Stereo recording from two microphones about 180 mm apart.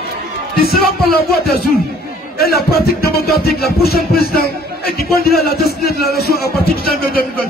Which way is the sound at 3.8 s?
60° left (ahead or behind).